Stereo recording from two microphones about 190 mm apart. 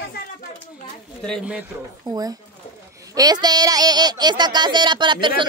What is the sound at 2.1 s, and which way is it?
Speech, 20° right (ahead or behind).